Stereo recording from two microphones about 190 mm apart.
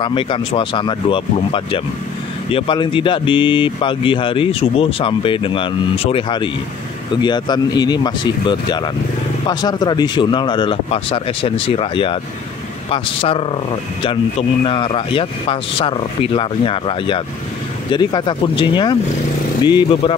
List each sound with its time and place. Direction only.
0.0 s speech: 25° left (ahead or behind)
14.6 s speech: 30° left (ahead or behind)